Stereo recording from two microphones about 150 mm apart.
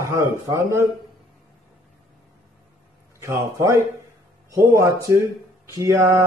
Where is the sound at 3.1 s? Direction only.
20° right (ahead or behind).